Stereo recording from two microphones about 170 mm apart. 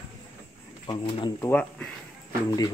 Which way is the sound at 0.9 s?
25° left (ahead or behind).